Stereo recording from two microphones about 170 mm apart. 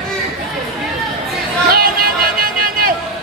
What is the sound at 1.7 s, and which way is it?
Music, 60° right (ahead or behind).